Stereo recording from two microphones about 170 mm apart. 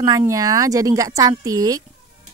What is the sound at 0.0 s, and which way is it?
Speech, 20° right (ahead or behind).